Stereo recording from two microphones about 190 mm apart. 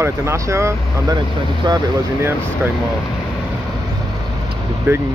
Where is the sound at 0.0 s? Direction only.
15° right (ahead or behind).